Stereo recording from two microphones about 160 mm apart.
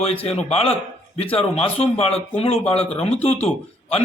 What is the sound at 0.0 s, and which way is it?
A man's voice, 40° left (ahead or behind).